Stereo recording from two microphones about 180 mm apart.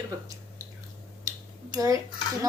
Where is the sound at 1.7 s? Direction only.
20° right (ahead or behind).